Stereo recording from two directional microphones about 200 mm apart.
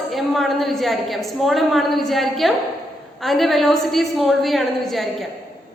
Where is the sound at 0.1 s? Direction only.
Centre (ahead or behind).